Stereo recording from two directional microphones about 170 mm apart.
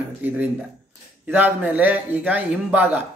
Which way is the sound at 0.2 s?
10° right (ahead or behind).